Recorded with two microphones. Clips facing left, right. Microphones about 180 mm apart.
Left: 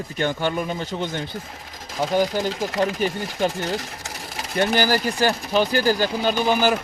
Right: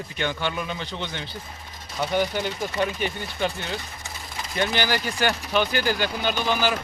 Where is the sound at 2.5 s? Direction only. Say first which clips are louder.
Left 4 dB; 90° left.